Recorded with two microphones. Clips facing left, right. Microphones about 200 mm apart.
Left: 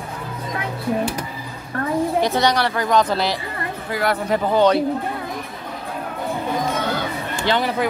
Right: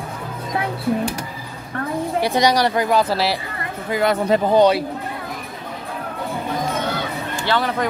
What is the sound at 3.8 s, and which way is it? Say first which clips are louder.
Speech: right 4 dB; 20° right (ahead or behind).